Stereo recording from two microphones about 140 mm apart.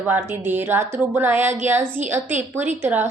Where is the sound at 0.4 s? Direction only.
15° right (ahead or behind).